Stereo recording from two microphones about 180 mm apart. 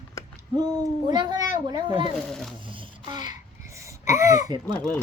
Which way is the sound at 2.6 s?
30° right (ahead or behind).